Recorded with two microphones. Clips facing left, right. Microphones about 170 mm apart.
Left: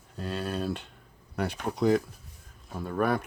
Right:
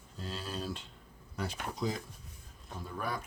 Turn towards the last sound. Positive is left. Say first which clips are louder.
# left 11 dB
turn(degrees=65)  # may be behind; listen again after turning